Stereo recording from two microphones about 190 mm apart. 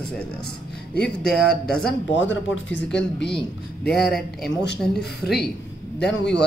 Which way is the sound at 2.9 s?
60° left (ahead or behind).